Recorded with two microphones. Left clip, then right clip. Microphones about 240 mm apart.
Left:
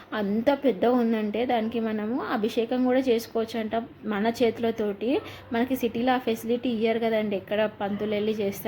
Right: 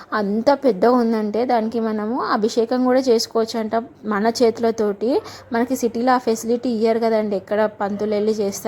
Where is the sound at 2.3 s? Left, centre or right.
Right.